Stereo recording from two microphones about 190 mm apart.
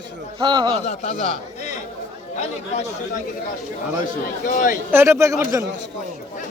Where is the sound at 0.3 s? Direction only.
25° right (ahead or behind).